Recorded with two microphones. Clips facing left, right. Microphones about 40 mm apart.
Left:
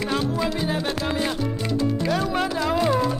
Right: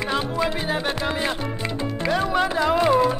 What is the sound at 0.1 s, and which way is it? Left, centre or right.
Music, right.